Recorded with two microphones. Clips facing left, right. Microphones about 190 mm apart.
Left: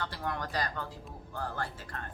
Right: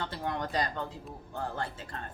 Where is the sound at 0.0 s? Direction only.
25° right (ahead or behind).